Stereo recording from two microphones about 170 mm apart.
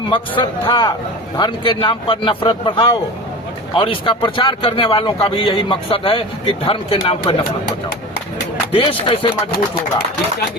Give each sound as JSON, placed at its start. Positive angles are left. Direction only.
{"t": 0.1, "sound": "a man's voice", "side_deg": 30}
{"t": 8.7, "sound": "a man's voice", "side_deg": 30}